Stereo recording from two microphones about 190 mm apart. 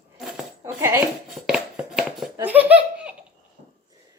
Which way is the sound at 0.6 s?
10° right (ahead or behind).